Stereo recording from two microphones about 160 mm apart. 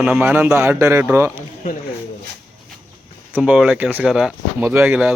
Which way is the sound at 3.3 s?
5° right (ahead or behind).